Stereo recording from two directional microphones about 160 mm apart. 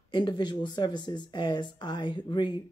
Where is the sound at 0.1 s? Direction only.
30° left (ahead or behind).